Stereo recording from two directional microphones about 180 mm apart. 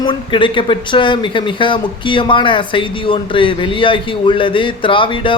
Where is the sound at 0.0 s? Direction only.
25° left (ahead or behind).